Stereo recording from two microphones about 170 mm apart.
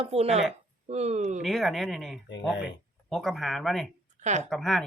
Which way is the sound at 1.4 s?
Centre (ahead or behind).